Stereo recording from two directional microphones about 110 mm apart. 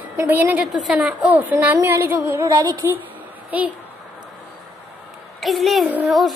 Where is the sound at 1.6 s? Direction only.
20° right (ahead or behind).